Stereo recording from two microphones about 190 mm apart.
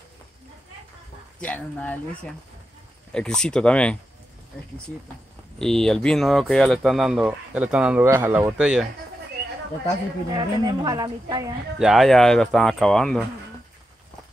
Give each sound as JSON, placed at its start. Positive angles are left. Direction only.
{"t": 1.4, "sound": "speech", "side_deg": 5}
{"t": 3.1, "sound": "speech", "side_deg": 5}
{"t": 5.6, "sound": "speech", "side_deg": 5}
{"t": 10.3, "sound": "speech", "side_deg": -20}
{"t": 11.8, "sound": "speech", "side_deg": 0}